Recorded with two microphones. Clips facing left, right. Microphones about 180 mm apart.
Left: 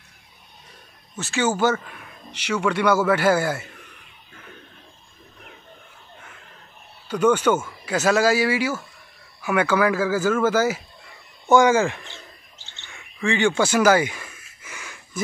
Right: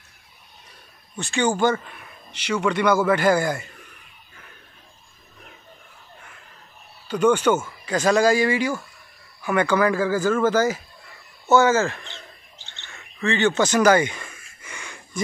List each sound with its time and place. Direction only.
1.1 s speech: 5° left (ahead or behind)
7.3 s speech: 10° right (ahead or behind)
7.8 s speech: 5° left (ahead or behind)
12.1 s bird: 15° right (ahead or behind)
12.8 s a sound: 15° left (ahead or behind)